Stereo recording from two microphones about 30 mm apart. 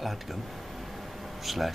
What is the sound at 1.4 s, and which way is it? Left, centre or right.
Speech, centre.